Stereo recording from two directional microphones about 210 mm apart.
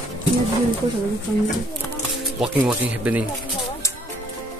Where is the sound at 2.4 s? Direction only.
5° right (ahead or behind).